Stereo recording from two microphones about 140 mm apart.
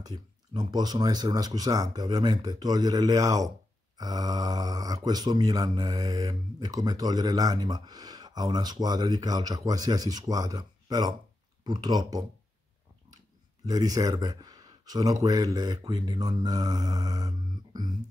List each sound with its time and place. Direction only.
0.6 s speech: 30° right (ahead or behind)
13.7 s speech: 25° right (ahead or behind)